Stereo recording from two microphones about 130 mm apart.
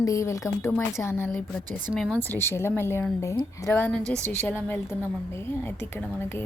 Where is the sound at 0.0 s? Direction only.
25° left (ahead or behind).